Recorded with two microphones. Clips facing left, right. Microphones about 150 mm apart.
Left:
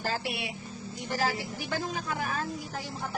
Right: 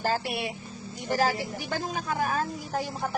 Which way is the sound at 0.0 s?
45° right (ahead or behind).